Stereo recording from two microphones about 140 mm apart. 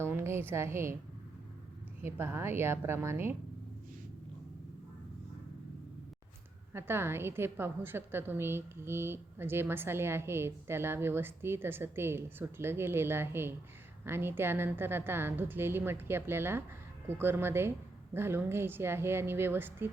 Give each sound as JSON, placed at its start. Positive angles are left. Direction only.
{"t": 0.0, "sound": "a sound", "side_deg": -15}
{"t": 2.0, "sound": "a woman's voice", "side_deg": -15}
{"t": 6.7, "sound": "a woman's voice", "side_deg": -15}